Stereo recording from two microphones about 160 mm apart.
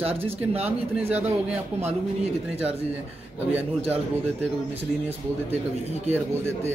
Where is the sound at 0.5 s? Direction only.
40° right (ahead or behind).